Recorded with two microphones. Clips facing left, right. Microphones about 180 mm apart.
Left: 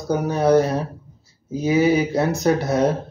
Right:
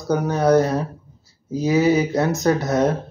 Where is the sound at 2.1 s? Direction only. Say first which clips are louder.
Even; 30° left (ahead or behind).